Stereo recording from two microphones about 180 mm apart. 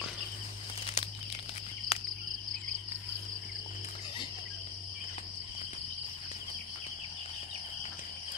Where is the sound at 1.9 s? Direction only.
35° left (ahead or behind).